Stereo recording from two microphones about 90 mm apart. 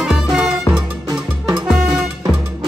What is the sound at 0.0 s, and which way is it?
Music, 5° right (ahead or behind).